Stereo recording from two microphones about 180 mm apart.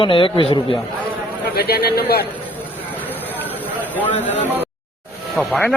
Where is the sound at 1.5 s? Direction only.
60° left (ahead or behind).